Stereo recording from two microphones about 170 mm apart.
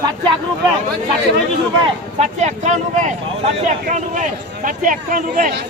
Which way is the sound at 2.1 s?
40° right (ahead or behind).